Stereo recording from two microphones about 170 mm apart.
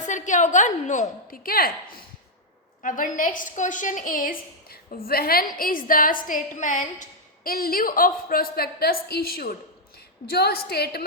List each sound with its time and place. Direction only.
0.0 s a woman's voice: 45° left (ahead or behind); by 11.0 s 65° left (ahead or behind)